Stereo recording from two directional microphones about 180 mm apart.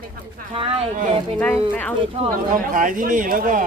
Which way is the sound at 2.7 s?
50° right (ahead or behind).